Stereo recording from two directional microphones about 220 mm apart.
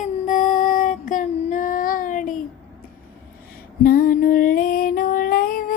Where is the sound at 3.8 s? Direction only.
40° left (ahead or behind).